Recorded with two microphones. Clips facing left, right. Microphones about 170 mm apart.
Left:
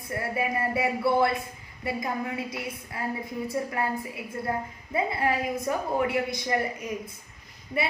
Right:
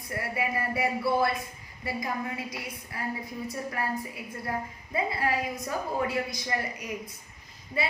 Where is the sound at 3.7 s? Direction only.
25° left (ahead or behind).